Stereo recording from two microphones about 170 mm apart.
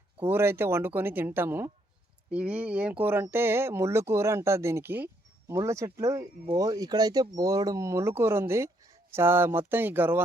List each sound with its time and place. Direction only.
0.2 s speech: 15° right (ahead or behind)